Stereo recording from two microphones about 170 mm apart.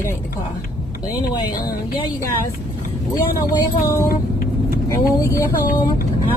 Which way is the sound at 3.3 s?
20° left (ahead or behind).